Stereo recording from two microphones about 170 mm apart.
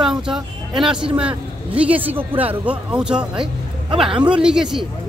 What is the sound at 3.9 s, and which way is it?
Speech, 30° right (ahead or behind).